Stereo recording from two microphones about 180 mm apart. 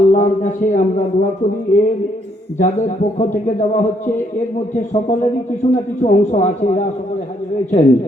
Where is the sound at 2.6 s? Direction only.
40° left (ahead or behind).